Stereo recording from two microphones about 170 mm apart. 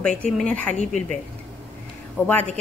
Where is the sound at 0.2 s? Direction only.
5° left (ahead or behind).